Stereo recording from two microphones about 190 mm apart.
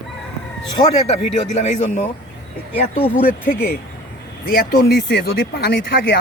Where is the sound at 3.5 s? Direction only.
55° left (ahead or behind).